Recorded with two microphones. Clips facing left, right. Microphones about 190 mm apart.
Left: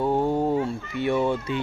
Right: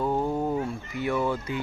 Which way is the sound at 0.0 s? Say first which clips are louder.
Left 4 dB; 25° left (ahead or behind).